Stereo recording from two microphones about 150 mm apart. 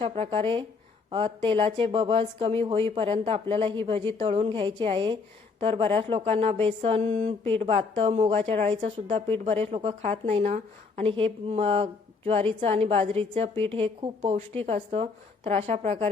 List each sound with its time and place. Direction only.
0.0 s a woman's voice: 40° right (ahead or behind)
8.1 s a woman's voice: 50° right (ahead or behind)